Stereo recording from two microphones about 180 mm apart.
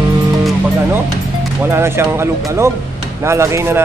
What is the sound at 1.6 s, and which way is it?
Speech, 15° right (ahead or behind).